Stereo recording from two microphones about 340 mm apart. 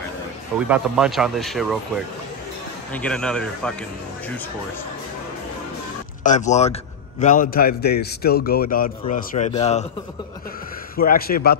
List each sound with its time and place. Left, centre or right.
0.6 s speech: centre
2.9 s speech: centre
6.2 s a man's voice: left
11.0 s a man's voice: left